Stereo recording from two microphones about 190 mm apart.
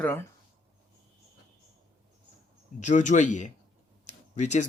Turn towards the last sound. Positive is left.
turn(degrees=40)  # may be behind; listen again after turning